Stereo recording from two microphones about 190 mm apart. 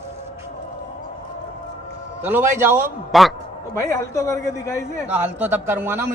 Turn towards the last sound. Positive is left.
turn(degrees=-10)  # may be behind; listen again after turning